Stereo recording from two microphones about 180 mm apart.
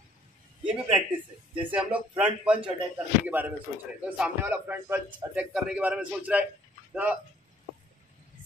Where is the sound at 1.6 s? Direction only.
5° right (ahead or behind).